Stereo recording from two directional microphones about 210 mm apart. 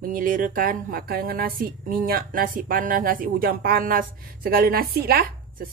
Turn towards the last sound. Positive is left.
turn(degrees=-45)  # may be behind; listen again after turning